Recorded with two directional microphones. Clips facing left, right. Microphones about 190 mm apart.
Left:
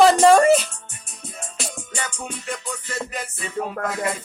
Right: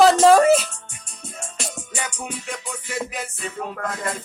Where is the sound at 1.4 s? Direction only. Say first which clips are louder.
Even; centre (ahead or behind).